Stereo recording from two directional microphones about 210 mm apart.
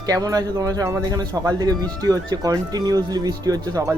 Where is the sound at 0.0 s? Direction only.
15° right (ahead or behind).